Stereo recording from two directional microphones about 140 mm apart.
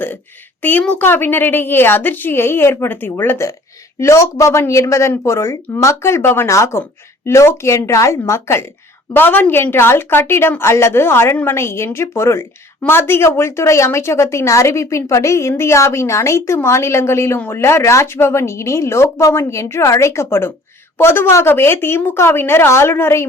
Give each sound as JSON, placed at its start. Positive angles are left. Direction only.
{"t": 0.6, "sound": "a woman's voice", "side_deg": 10}